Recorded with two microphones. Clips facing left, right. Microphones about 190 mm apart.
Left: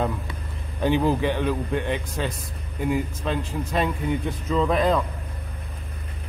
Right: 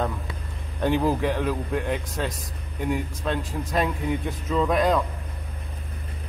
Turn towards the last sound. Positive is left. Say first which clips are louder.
# even
turn(degrees=0)  # may be behind; listen again after turning